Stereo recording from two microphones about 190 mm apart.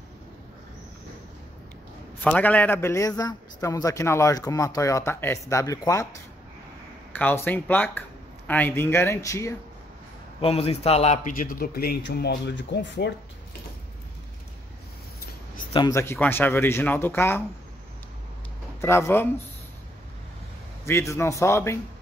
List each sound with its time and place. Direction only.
2.2 s a man's voice: 5° left (ahead or behind)
7.1 s a man's voice: 10° left (ahead or behind)
10.4 s a man's voice: 30° left (ahead or behind); by 13.1 s 70° left (ahead or behind)
15.7 s a man's voice: 20° left (ahead or behind)
18.8 s a man's voice: 15° left (ahead or behind)
21.1 s a man's voice: 15° left (ahead or behind)